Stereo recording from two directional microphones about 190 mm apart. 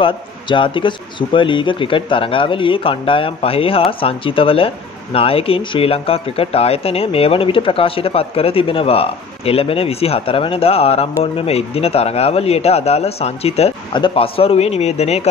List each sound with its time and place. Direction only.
0.0 s speech: 25° left (ahead or behind)